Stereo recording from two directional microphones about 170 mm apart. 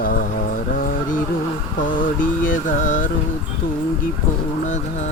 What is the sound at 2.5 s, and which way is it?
Mantra, 50° left (ahead or behind).